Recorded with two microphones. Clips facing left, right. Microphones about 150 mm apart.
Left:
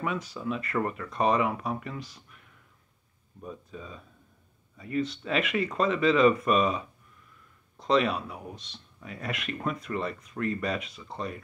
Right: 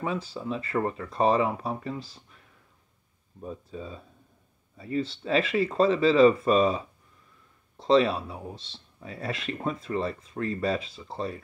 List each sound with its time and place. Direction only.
0.0 s speech: 30° right (ahead or behind)